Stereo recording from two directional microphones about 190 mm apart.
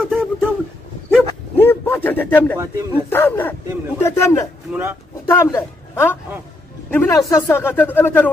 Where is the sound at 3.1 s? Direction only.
10° left (ahead or behind).